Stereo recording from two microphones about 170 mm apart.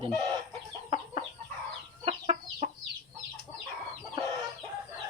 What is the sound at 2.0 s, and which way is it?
Chicken, 35° right (ahead or behind).